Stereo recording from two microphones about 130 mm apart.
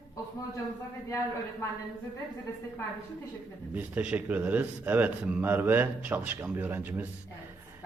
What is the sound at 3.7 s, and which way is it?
A man's voice, 10° right (ahead or behind).